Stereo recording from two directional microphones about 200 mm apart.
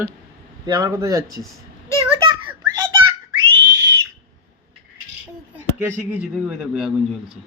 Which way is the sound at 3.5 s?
20° right (ahead or behind).